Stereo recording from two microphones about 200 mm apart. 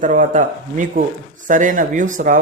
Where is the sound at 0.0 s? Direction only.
40° right (ahead or behind).